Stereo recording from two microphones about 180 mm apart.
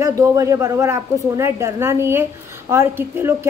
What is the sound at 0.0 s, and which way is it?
Speech, 20° right (ahead or behind).